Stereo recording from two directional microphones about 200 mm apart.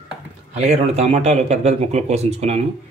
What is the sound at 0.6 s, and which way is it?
Speech, 35° right (ahead or behind).